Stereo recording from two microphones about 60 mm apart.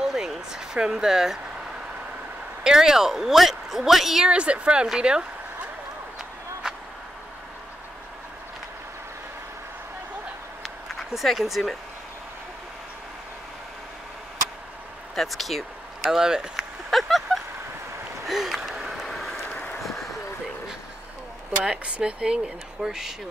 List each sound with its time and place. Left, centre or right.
0.0 s speech: centre
2.6 s speech: centre
4.3 s speech: centre
6.6 s vehicle: centre
10.6 s a sound: centre
15.1 s speech: centre
16.1 s speech: centre
16.9 s vehicle: centre
18.2 s gasp: centre
19.5 s vehicle: left
21.6 s speech: centre